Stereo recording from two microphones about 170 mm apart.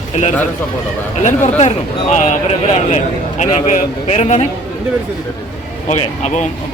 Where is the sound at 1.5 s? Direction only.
40° left (ahead or behind).